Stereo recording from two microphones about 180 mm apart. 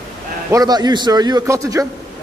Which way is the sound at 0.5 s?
20° right (ahead or behind).